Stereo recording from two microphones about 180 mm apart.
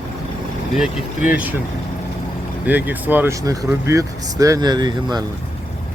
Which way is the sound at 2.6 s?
10° right (ahead or behind).